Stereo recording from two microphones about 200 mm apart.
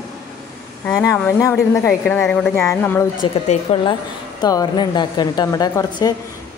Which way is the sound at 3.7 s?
25° left (ahead or behind).